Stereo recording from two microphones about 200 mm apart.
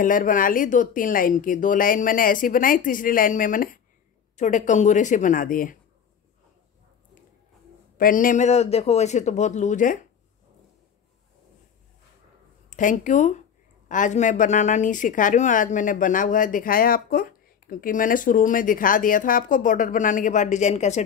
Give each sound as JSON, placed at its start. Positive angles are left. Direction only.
{"t": 0.0, "sound": "a woman's voice", "side_deg": 40}
{"t": 8.0, "sound": "a woman's voice", "side_deg": 45}
{"t": 12.6, "sound": "a woman's voice", "side_deg": 40}